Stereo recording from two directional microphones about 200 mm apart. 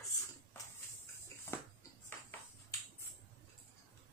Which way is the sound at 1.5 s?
10° left (ahead or behind).